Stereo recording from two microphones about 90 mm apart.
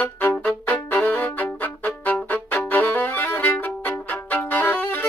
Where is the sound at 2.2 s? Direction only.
20° left (ahead or behind).